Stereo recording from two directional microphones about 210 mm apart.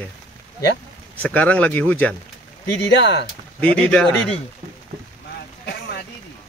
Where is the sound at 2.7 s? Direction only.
55° left (ahead or behind).